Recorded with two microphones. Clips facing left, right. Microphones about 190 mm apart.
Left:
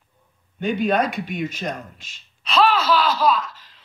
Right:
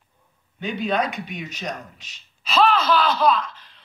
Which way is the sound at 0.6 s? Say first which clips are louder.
Left 4 dB; 50° left (ahead or behind).